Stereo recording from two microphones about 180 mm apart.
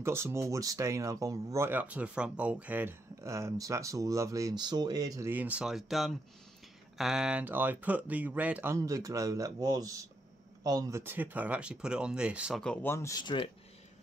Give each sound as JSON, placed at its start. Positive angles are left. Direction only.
{"t": 0.0, "sound": "speech", "side_deg": -15}